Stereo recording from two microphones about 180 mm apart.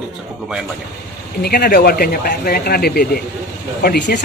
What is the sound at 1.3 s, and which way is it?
Speech, 55° left (ahead or behind).